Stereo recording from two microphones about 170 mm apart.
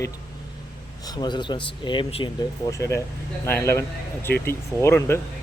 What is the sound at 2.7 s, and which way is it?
Speech, 15° left (ahead or behind).